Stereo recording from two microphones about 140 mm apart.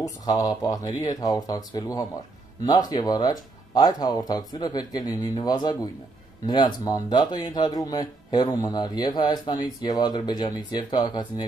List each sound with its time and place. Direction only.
0.0 s speech: 25° left (ahead or behind)